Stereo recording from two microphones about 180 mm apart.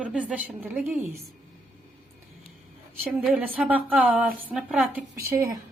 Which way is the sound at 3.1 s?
5° right (ahead or behind).